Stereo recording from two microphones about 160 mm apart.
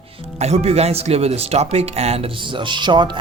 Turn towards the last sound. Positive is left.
turn(degrees=-30)  # may be behind; listen again after turning